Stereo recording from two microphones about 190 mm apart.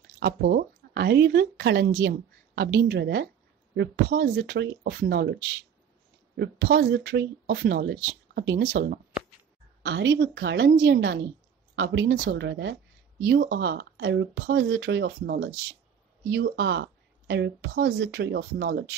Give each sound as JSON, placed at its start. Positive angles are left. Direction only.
{"t": 0.2, "sound": "a woman's voice", "side_deg": -55}
{"t": 11.0, "sound": "a woman's voice", "side_deg": -60}
{"t": 13.3, "sound": "speech", "side_deg": -55}